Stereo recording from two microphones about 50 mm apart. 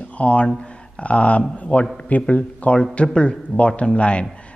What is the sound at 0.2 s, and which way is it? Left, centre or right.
A man's voice, left.